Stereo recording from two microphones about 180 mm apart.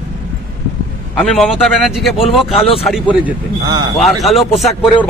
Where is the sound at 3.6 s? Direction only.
25° right (ahead or behind).